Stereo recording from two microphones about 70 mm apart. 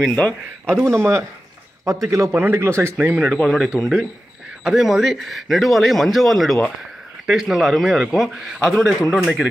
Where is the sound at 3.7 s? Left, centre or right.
Left.